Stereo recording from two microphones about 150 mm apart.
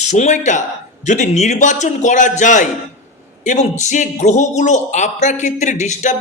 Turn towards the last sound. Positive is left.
turn(degrees=50)  # may be behind; listen again after turning